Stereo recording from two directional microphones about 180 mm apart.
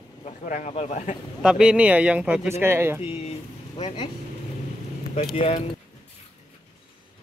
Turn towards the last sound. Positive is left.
turn(degrees=35)  # may be behind; listen again after turning